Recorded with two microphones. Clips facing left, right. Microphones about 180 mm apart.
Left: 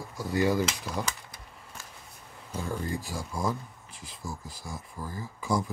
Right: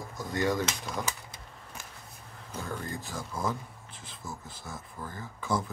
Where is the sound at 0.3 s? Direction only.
10° left (ahead or behind).